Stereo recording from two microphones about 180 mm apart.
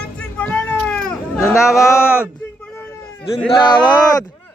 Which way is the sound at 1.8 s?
15° left (ahead or behind).